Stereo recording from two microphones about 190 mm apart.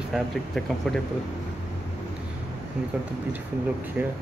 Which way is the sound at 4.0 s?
5° right (ahead or behind).